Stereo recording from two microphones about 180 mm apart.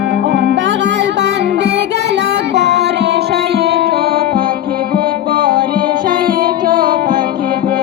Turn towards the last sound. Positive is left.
turn(degrees=-50)  # may be behind; listen again after turning